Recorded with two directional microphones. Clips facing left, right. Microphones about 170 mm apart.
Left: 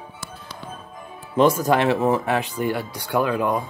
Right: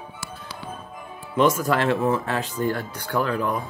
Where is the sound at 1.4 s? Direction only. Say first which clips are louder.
Left 2 dB; 30° left (ahead or behind).